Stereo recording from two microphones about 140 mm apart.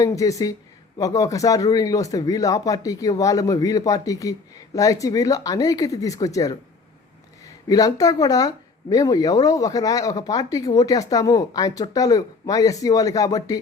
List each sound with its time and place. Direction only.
0.0 s speech: 25° left (ahead or behind)
7.7 s speech: 25° left (ahead or behind)